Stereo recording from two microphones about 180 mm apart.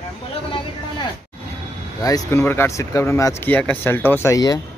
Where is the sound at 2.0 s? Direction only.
20° left (ahead or behind).